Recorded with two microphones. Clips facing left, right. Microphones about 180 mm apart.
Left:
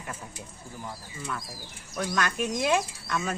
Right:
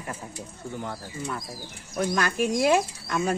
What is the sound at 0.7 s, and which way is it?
Speech, 70° right (ahead or behind).